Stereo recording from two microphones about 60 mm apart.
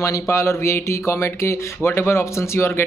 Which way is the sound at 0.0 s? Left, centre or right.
Left.